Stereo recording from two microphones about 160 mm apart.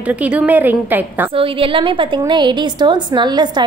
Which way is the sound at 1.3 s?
35° right (ahead or behind).